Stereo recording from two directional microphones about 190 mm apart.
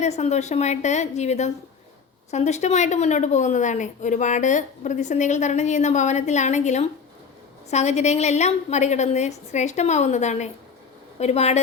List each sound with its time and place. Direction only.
0.0 s a woman's voice: 35° left (ahead or behind)